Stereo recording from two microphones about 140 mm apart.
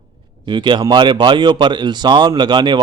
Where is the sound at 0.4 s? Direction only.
35° right (ahead or behind).